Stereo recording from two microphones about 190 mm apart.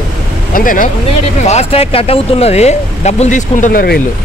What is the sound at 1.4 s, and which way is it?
Speech, 35° left (ahead or behind).